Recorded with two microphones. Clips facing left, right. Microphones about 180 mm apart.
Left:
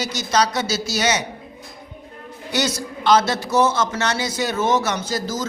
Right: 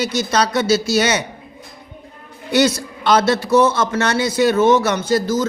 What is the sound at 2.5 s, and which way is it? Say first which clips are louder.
A man's voice: right 7 dB; 60° right (ahead or behind).